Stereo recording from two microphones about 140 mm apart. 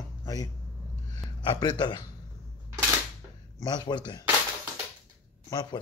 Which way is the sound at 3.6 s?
30° left (ahead or behind).